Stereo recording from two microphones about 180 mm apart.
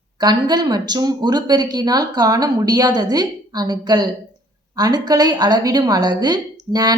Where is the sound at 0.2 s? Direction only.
25° right (ahead or behind).